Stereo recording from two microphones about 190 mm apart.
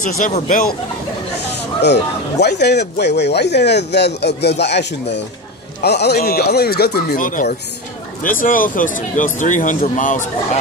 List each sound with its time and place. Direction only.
0.2 s speech: 45° left (ahead or behind)
1.8 s speech: 65° left (ahead or behind); by 10.6 s 40° left (ahead or behind)